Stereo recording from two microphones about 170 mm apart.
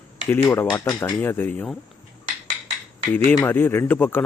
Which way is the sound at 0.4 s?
15° left (ahead or behind).